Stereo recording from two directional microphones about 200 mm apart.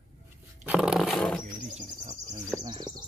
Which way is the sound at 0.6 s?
5° right (ahead or behind).